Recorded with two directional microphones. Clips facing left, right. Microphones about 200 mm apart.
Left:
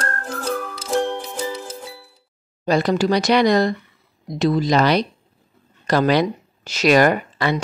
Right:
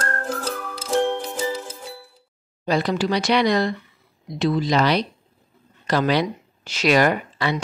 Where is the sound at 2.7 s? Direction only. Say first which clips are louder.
Left 4 dB; 45° left (ahead or behind).